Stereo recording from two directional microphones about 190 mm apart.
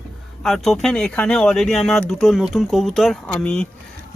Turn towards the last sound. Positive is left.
turn(degrees=5)  # may be behind; listen again after turning